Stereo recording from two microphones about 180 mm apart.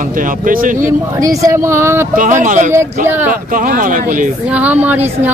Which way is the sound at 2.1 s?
45° right (ahead or behind).